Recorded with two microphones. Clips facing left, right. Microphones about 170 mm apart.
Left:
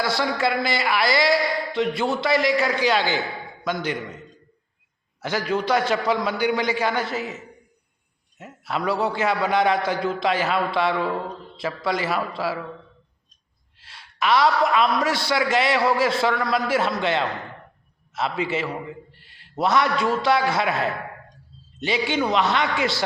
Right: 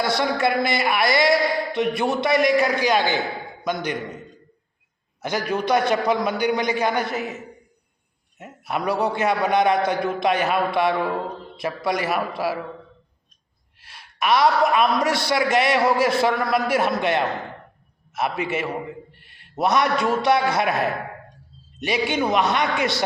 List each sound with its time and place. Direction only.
0.1 s a man's voice: 20° right (ahead or behind)
14.2 s a man's voice: 20° right (ahead or behind)